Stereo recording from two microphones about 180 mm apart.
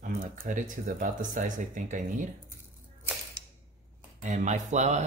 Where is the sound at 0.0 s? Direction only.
45° right (ahead or behind).